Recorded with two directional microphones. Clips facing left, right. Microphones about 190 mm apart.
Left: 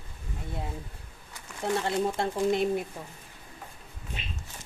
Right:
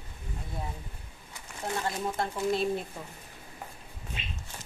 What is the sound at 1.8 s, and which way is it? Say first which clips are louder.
Speech: left 4 dB; 20° left (ahead or behind).